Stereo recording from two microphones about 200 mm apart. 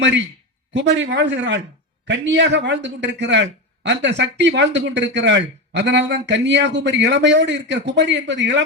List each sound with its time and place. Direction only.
0.7 s a man's voice: 65° right (ahead or behind)